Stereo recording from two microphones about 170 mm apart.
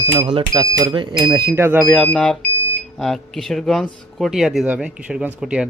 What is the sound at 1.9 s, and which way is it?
Speech, 5° left (ahead or behind).